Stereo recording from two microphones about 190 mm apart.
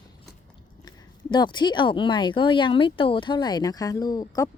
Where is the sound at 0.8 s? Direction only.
25° left (ahead or behind).